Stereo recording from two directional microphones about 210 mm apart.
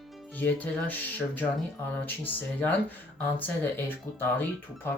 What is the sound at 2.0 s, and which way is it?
Speech, 10° left (ahead or behind).